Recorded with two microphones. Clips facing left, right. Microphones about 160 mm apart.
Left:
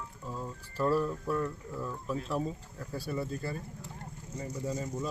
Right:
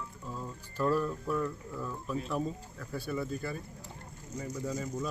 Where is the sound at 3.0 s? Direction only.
30° left (ahead or behind).